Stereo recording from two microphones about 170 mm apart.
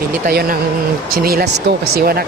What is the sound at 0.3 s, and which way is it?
Speech, 55° right (ahead or behind).